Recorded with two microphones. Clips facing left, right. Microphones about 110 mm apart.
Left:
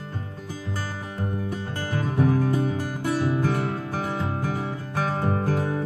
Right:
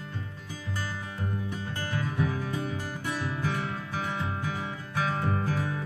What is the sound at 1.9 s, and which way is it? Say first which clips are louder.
Music: left 8 dB; 40° left (ahead or behind).